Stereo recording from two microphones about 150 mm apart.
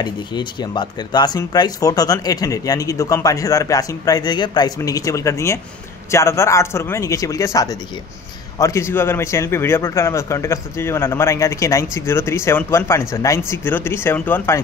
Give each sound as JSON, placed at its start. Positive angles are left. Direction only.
{"t": 0.0, "sound": "a man's voice", "side_deg": 30}